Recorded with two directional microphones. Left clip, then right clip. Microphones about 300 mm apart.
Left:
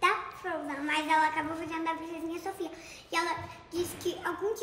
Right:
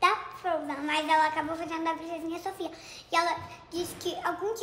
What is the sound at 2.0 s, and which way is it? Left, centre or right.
A woman's voice, centre.